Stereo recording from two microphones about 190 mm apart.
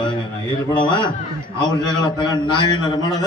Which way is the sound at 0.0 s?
25° left (ahead or behind).